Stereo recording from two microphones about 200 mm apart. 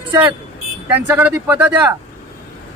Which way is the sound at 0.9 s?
10° right (ahead or behind).